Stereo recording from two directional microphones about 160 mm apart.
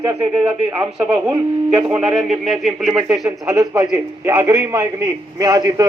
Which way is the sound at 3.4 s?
20° right (ahead or behind).